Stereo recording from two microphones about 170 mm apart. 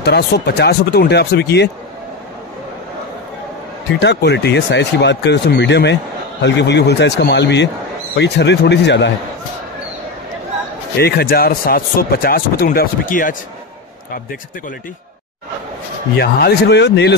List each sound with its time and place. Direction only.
0.0 s speech: 75° left (ahead or behind)
4.0 s speech: 85° left
11.0 s speech: 65° left (ahead or behind)
16.2 s speech: 70° left (ahead or behind)